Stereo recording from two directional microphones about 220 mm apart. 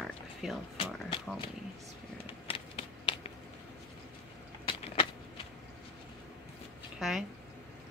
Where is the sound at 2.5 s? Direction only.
25° left (ahead or behind).